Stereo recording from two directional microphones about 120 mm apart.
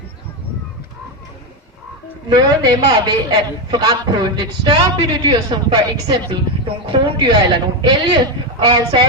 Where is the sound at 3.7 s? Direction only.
35° right (ahead or behind).